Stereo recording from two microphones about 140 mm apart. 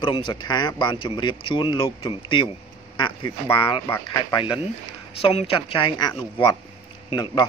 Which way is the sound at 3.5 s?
40° left (ahead or behind).